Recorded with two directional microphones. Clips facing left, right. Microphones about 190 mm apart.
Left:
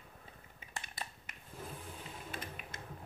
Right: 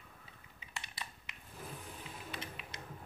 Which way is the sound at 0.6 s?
50° left (ahead or behind).